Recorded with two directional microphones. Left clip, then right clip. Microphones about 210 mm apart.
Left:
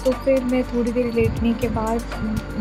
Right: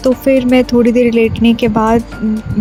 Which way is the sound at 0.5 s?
45° right (ahead or behind).